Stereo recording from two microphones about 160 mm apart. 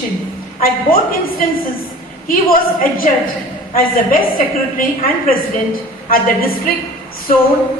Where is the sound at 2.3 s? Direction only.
65° left (ahead or behind).